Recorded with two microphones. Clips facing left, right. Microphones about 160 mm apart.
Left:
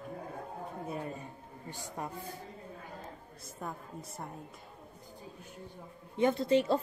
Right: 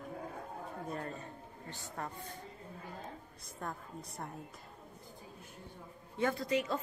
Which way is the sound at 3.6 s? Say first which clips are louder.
Left 1 dB; 5° left (ahead or behind).